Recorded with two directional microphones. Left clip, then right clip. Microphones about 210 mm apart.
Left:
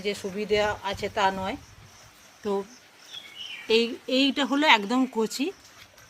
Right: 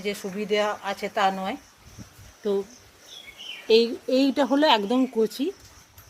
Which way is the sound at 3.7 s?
10° left (ahead or behind).